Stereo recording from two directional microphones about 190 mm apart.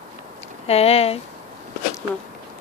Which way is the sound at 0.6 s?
30° left (ahead or behind).